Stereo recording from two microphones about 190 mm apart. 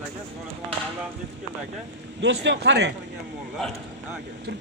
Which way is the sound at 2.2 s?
65° right (ahead or behind).